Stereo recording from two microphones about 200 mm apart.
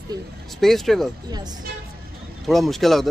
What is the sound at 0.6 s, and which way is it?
Speech, centre (ahead or behind).